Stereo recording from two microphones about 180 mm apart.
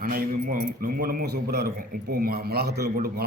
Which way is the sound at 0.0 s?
55° right (ahead or behind).